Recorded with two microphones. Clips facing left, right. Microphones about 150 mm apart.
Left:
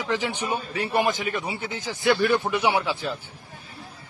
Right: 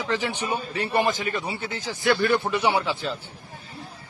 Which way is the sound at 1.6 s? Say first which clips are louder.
Left 1 dB; 20° left (ahead or behind).